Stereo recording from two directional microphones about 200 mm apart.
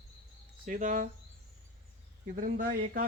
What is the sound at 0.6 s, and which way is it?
Speech, 40° right (ahead or behind).